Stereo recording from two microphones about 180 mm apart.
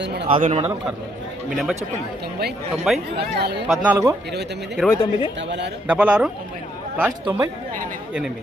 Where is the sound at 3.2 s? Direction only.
65° right (ahead or behind).